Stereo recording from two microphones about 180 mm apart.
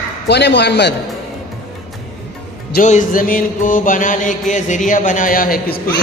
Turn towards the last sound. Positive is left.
turn(degrees=55)  # may be behind; listen again after turning